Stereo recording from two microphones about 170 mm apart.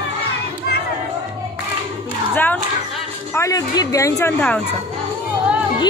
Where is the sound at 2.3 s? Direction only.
10° left (ahead or behind).